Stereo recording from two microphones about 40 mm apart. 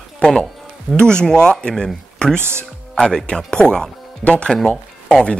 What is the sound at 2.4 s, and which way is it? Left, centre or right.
Speech, right.